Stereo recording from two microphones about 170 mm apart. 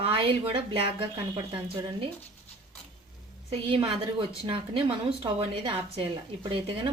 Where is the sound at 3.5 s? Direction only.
30° right (ahead or behind).